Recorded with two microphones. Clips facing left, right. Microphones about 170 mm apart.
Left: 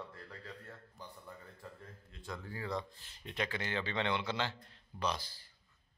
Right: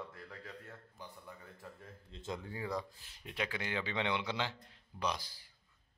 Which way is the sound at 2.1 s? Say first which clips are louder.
Right 2 dB; 20° right (ahead or behind).